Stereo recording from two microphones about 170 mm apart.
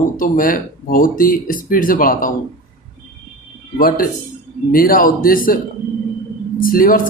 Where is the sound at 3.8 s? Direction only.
55° left (ahead or behind).